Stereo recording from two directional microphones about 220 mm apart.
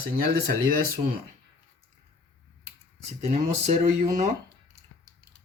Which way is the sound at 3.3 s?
30° right (ahead or behind).